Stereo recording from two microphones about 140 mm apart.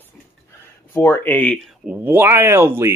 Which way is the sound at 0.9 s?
15° left (ahead or behind).